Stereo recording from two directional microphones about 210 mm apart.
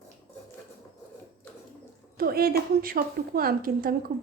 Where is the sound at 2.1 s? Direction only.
45° right (ahead or behind).